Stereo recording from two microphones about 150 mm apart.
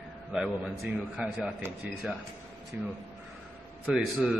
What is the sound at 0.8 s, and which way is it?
Speech, 5° right (ahead or behind).